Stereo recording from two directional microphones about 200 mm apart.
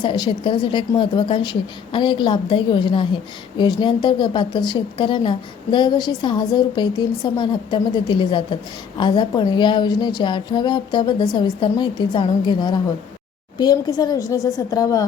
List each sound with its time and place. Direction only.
0.0 s a woman's voice: 25° left (ahead or behind)